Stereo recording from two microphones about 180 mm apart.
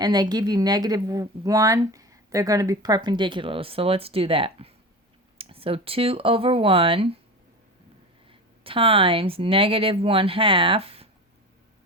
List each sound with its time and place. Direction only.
0.0 s a woman's voice: 20° right (ahead or behind)
8.3 s speech: 30° right (ahead or behind)